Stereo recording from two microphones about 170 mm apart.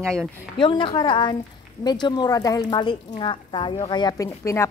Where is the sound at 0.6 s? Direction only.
30° left (ahead or behind).